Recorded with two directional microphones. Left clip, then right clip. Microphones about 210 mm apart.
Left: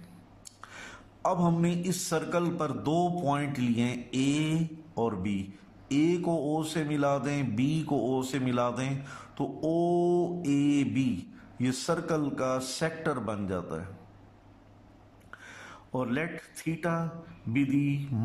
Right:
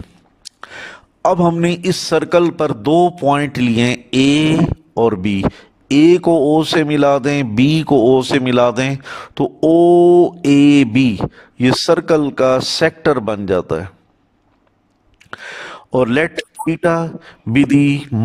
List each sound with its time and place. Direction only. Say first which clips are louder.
0.5 s speech: right 14 dB; 40° right (ahead or behind)
15.3 s a sound: right 17 dB; 40° right (ahead or behind)
16.8 s speech: right 17 dB; 45° right (ahead or behind)